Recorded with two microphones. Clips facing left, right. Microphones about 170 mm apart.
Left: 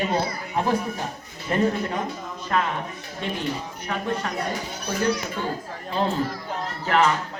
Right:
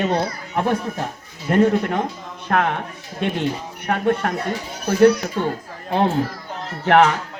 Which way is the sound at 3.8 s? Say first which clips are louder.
Right 9 dB; 60° right (ahead or behind).